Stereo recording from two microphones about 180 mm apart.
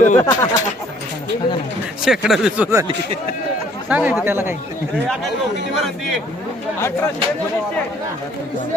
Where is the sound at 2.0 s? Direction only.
Centre (ahead or behind).